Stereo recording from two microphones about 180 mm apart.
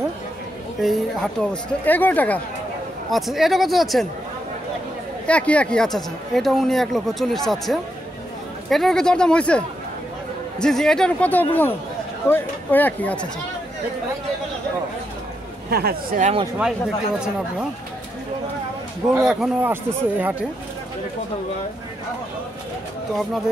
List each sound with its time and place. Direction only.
0.7 s speech: centre (ahead or behind)
5.2 s speech: 5° left (ahead or behind)
8.6 s speech: centre (ahead or behind)
10.6 s speech: centre (ahead or behind)
15.7 s speech: 60° right (ahead or behind)
16.5 s speech: 5° right (ahead or behind)
19.1 s a man's voice: 5° right (ahead or behind)